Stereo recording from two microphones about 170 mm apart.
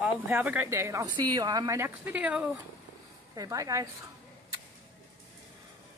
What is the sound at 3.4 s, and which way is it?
Speech, 20° right (ahead or behind).